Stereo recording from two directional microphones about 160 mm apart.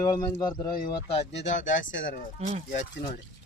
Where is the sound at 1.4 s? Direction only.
50° left (ahead or behind).